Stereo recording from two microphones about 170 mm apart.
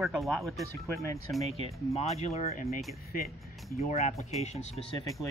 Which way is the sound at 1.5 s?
40° left (ahead or behind).